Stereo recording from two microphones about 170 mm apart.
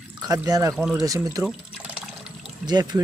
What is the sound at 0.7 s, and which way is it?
Speech, centre (ahead or behind).